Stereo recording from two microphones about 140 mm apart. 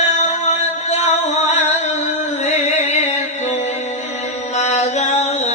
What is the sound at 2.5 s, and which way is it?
Music, 55° left (ahead or behind).